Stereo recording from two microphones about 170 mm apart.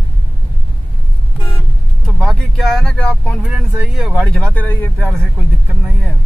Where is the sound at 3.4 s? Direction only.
5° right (ahead or behind); by 5.2 s 10° left (ahead or behind).